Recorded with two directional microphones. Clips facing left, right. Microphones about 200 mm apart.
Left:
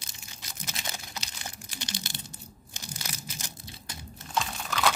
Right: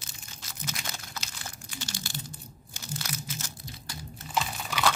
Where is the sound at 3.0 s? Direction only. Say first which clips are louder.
Right 5 dB; 15° left (ahead or behind).